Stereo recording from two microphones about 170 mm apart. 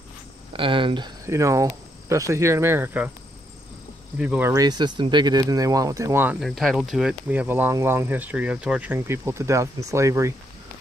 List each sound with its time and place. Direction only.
0.5 s cricket: 30° right (ahead or behind); by 3.1 s 10° right (ahead or behind)
4.2 s speech: 5° right (ahead or behind)
4.5 s speech: 20° right (ahead or behind)
6.4 s speech: centre (ahead or behind); by 10.3 s 15° right (ahead or behind)